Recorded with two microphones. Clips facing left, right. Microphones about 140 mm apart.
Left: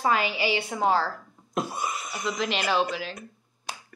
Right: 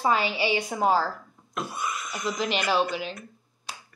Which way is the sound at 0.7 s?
5° right (ahead or behind).